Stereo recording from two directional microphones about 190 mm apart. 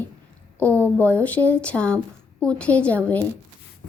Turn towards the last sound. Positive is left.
turn(degrees=10)  # may be behind; listen again after turning